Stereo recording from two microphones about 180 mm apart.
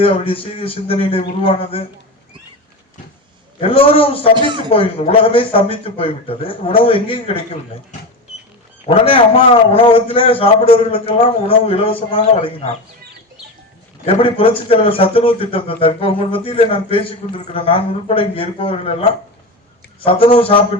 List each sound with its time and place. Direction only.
0.0 s a man's voice: 30° left (ahead or behind)
3.6 s a man's voice: 30° left (ahead or behind)
4.4 s speech: 25° right (ahead or behind)
4.7 s a man's voice: 30° left (ahead or behind)
8.9 s a man's voice: 35° left (ahead or behind)
14.0 s a man's voice: 30° left (ahead or behind)
20.1 s a man's voice: 30° left (ahead or behind)